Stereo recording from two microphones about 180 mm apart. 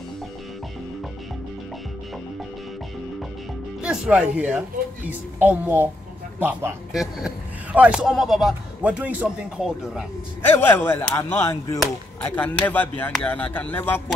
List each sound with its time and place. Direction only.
3.8 s a man's voice: 5° right (ahead or behind)
10.4 s speech: 10° left (ahead or behind)